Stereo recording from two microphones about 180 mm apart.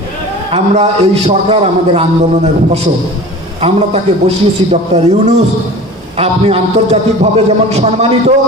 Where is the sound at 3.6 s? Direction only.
35° right (ahead or behind).